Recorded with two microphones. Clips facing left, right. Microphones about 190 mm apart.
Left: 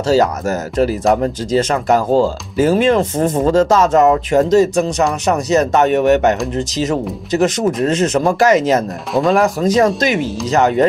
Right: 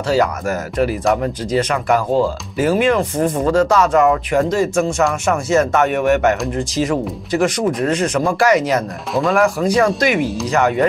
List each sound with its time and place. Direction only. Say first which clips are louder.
0.1 s speech: left 3 dB; 40° left (ahead or behind)